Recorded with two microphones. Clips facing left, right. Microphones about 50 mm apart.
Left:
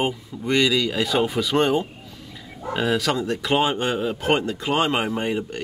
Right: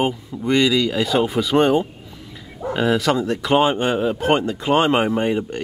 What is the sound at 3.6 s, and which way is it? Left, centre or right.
Speech, centre.